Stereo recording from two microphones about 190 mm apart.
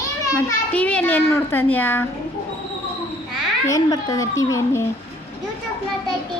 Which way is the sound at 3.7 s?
20° left (ahead or behind).